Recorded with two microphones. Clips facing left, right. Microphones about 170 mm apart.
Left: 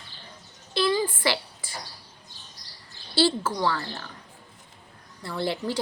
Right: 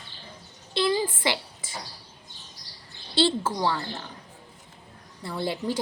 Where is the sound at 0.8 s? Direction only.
20° right (ahead or behind).